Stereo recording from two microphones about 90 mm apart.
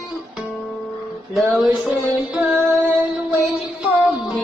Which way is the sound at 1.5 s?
Centre (ahead or behind).